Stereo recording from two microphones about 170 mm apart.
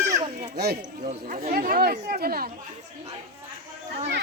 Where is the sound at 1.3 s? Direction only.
60° right (ahead or behind).